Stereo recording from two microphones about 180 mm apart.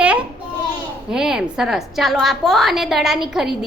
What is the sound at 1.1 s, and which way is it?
A child's voice, 5° right (ahead or behind).